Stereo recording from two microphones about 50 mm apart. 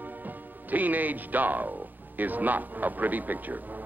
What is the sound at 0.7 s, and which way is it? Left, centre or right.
A man's voice, right.